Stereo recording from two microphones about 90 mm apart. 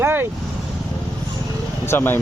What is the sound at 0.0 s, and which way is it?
Vehicle, 25° right (ahead or behind).